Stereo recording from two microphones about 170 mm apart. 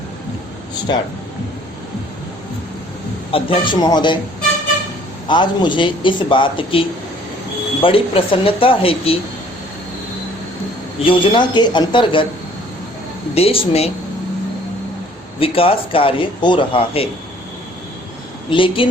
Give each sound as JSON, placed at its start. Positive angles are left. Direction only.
{"t": 3.3, "sound": "a man's voice", "side_deg": 30}
{"t": 5.3, "sound": "a man's voice", "side_deg": 25}
{"t": 11.0, "sound": "a man's voice", "side_deg": 30}
{"t": 13.3, "sound": "a man's voice", "side_deg": 35}
{"t": 15.4, "sound": "a man's voice", "side_deg": 35}
{"t": 18.5, "sound": "a man's voice", "side_deg": 30}